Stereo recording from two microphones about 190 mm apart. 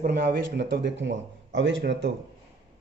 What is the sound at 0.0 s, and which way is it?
A man's voice, 55° right (ahead or behind).